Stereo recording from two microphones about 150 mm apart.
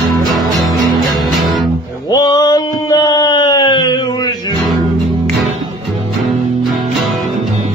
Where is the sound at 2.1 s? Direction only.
25° left (ahead or behind).